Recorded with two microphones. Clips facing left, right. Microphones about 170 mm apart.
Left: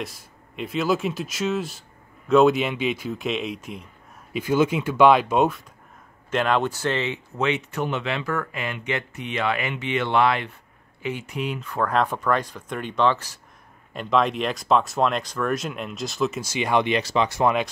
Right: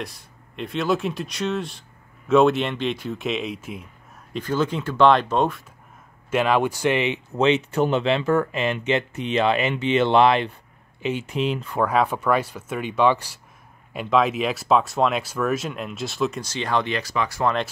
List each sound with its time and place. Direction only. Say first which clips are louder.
0.0 s speech: even; centre (ahead or behind)
4.3 s speech: left 3 dB; 10° left (ahead or behind)
6.3 s speech: right 2 dB; 5° right (ahead or behind)
7.3 s speech: right 6 dB; 25° right (ahead or behind)
11.7 s speech: even; 10° right (ahead or behind); by 17.5 s 20° left (ahead or behind)